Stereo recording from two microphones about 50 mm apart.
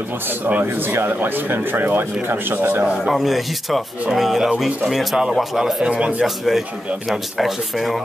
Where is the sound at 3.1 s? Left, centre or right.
Centre.